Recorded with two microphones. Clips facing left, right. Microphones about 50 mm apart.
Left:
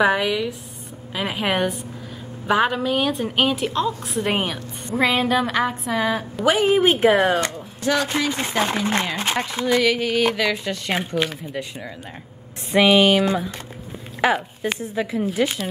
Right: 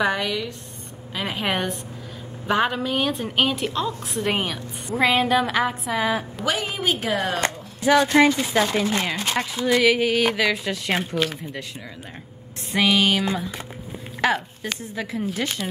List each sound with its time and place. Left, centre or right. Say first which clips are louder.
0.0 s a woman's voice: left 4 dB; centre
6.4 s speech: left 12 dB; centre
6.8 s speech: left 8 dB; left
7.8 s speech: right 4 dB; centre
8.6 s speech: left 1 dB; left
9.8 s a woman's voice: right 1 dB; centre
12.7 s a woman's voice: left 5 dB; centre